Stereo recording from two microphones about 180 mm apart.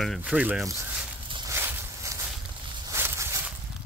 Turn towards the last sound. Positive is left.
turn(degrees=-15)  # may be behind; listen again after turning